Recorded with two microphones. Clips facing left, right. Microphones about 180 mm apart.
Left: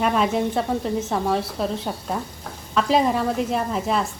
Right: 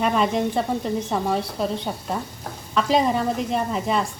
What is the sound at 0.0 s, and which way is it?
A woman's voice, centre (ahead or behind).